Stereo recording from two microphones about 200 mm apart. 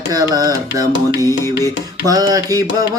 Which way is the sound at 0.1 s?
20° right (ahead or behind).